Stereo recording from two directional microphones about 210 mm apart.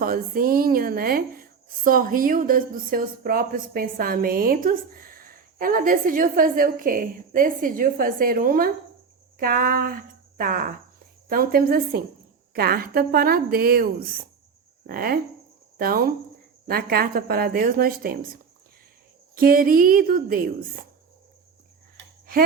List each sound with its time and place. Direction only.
0.0 s a woman's voice: 45° right (ahead or behind)
19.4 s a woman's voice: 45° right (ahead or behind)